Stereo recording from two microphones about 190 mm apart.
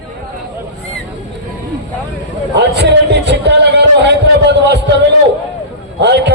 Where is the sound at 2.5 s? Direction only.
65° right (ahead or behind).